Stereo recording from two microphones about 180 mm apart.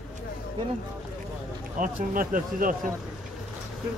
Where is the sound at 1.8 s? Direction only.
50° right (ahead or behind).